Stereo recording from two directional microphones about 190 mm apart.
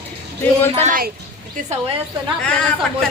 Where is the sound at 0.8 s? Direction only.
50° right (ahead or behind).